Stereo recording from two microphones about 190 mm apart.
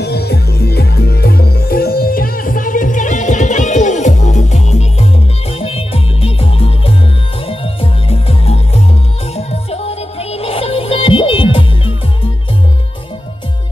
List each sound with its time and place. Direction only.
0.0 s music: 60° left (ahead or behind); by 11.9 s 30° left (ahead or behind)